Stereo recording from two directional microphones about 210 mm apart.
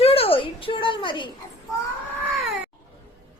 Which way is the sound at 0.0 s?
25° left (ahead or behind).